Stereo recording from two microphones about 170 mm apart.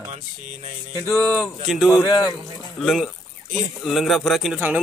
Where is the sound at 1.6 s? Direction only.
Centre (ahead or behind).